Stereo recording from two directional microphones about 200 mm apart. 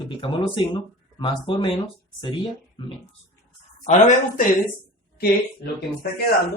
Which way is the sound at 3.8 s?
35° left (ahead or behind).